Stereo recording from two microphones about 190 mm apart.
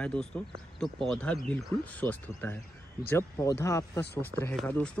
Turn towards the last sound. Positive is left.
turn(degrees=10)  # may be behind; listen again after turning